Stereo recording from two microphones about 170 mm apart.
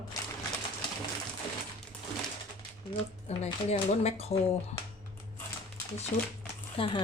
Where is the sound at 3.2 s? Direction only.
40° left (ahead or behind).